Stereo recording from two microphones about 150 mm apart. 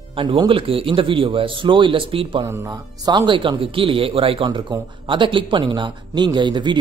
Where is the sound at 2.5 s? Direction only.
25° right (ahead or behind).